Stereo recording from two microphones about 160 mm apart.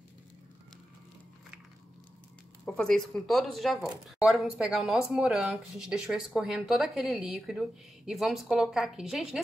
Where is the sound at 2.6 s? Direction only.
5° left (ahead or behind).